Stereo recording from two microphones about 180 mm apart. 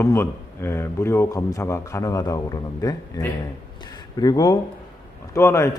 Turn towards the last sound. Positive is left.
turn(degrees=15)  # may be behind; listen again after turning